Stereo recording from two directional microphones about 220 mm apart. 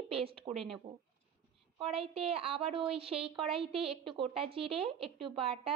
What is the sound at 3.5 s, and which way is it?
Speech, centre (ahead or behind).